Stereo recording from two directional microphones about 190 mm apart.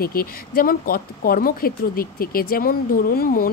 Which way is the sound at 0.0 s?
50° left (ahead or behind).